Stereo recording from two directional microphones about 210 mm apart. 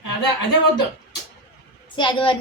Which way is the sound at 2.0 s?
25° left (ahead or behind).